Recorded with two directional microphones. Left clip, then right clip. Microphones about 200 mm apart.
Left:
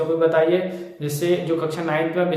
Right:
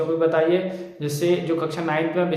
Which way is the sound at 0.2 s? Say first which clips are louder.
Left 2 dB; 5° right (ahead or behind).